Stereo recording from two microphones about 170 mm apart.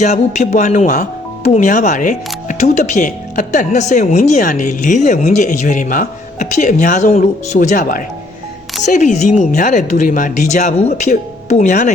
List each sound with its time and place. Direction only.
0.0 s speech: 45° left (ahead or behind)